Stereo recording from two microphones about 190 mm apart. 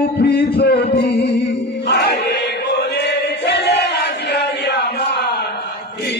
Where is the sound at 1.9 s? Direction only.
60° left (ahead or behind).